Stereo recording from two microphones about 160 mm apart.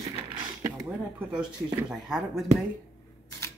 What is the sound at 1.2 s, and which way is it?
Speech, 5° right (ahead or behind).